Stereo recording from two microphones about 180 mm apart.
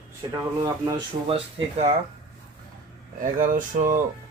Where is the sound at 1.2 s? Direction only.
30° right (ahead or behind).